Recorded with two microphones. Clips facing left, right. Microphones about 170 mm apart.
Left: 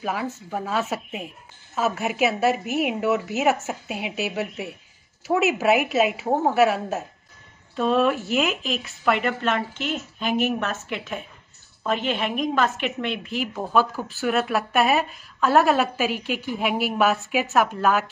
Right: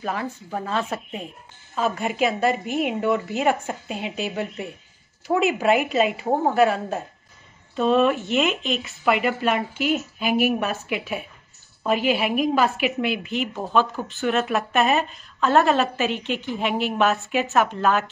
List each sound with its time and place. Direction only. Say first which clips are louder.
0.0 s a woman's voice: even; 5° left (ahead or behind)